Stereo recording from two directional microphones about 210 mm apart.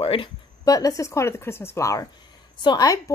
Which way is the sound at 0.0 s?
25° left (ahead or behind).